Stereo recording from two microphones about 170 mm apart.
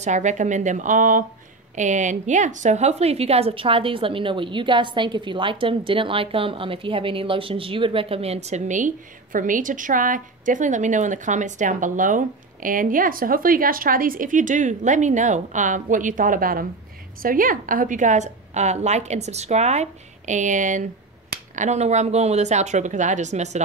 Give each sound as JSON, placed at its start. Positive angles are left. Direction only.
{"t": 0.0, "sound": "a woman's voice", "side_deg": -45}